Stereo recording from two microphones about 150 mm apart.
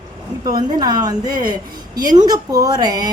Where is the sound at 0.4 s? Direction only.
25° right (ahead or behind).